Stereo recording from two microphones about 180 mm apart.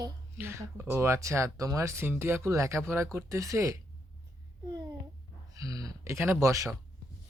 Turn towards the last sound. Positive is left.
turn(degrees=-15)  # may be behind; listen again after turning